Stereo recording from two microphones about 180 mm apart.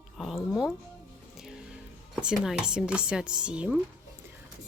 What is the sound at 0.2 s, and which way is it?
Music, centre (ahead or behind).